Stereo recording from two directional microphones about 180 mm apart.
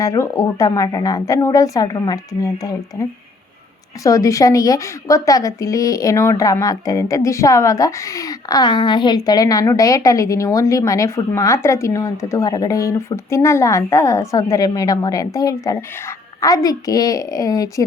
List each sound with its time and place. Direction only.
0.0 s a woman's voice: 20° left (ahead or behind)